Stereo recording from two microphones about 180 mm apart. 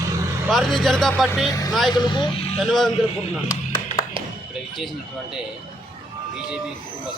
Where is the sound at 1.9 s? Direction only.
25° left (ahead or behind).